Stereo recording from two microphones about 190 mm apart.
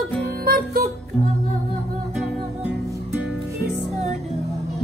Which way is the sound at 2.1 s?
5° right (ahead or behind).